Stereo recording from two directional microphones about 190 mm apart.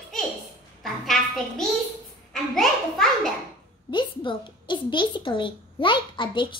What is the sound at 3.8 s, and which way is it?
A woman's voice, 25° left (ahead or behind).